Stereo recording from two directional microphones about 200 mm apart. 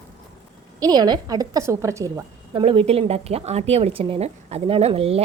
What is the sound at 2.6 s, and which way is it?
A woman's voice, 30° right (ahead or behind).